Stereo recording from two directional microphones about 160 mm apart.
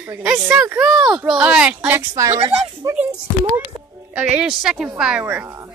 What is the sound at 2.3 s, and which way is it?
Speech, 40° right (ahead or behind).